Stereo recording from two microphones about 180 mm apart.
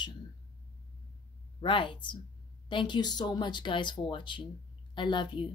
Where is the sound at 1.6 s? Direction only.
30° left (ahead or behind).